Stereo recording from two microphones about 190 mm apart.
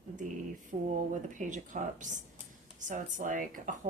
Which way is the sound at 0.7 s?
45° right (ahead or behind).